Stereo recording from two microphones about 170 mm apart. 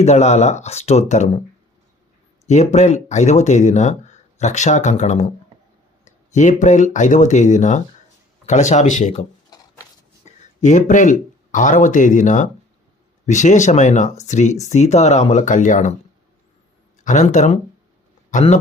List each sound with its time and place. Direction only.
0.0 s speech: 40° left (ahead or behind)
2.5 s speech: 45° left (ahead or behind)
10.2 s speech: 45° left (ahead or behind)
17.0 s speech: 45° left (ahead or behind)